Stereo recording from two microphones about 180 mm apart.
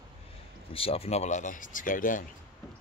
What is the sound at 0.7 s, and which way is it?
Speech, 35° left (ahead or behind).